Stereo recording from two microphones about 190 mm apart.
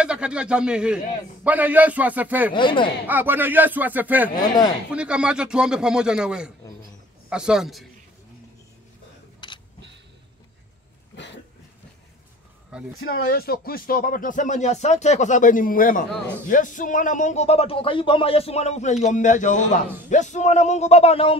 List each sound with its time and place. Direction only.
0.0 s speech: 5° right (ahead or behind)
2.5 s speech: 25° left (ahead or behind)
3.1 s speech: 10° right (ahead or behind)
4.4 s speech: 20° left (ahead or behind)
4.9 s a man's voice: 5° right (ahead or behind)
9.4 s a sound: 25° left (ahead or behind)
13.3 s speech: 55° left (ahead or behind); by 21.4 s 30° left (ahead or behind)